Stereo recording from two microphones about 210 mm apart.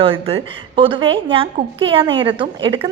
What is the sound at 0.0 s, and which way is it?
A woman's voice, 25° right (ahead or behind).